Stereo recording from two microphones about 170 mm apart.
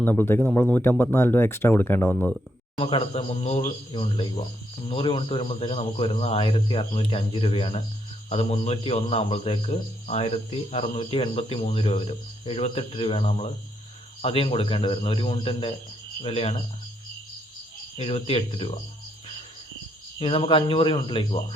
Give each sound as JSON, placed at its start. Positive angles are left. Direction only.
{"t": 0.0, "sound": "speech", "side_deg": 10}
{"t": 2.7, "sound": "speech", "side_deg": 30}
{"t": 3.9, "sound": "speech", "side_deg": 30}
{"t": 17.9, "sound": "speech", "side_deg": 35}
{"t": 20.1, "sound": "speech", "side_deg": 30}